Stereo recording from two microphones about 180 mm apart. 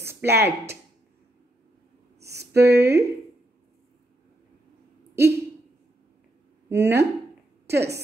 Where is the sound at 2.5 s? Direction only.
65° right (ahead or behind).